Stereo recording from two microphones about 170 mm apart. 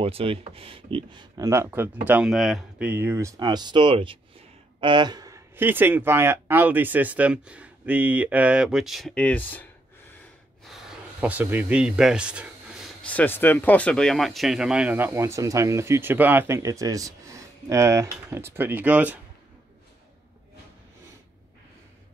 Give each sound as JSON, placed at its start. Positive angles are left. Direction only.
{"t": 0.0, "sound": "speech", "side_deg": -35}
{"t": 10.6, "sound": "a sound", "side_deg": 0}
{"t": 13.0, "sound": "speech", "side_deg": 10}